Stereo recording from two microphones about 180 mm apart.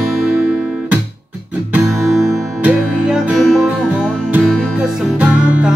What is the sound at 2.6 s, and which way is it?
Music, 5° right (ahead or behind).